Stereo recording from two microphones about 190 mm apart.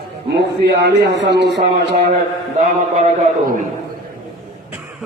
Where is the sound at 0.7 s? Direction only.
60° right (ahead or behind).